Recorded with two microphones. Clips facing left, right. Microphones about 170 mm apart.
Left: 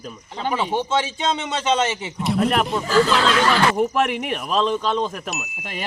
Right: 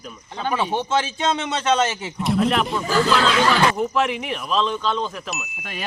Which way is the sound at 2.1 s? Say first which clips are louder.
Even; centre (ahead or behind).